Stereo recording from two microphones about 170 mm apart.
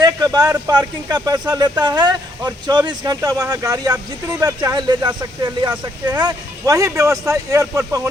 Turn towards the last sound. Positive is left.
turn(degrees=-15)  # may be behind; listen again after turning